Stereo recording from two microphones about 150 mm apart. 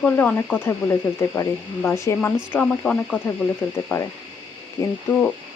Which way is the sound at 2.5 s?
10° left (ahead or behind).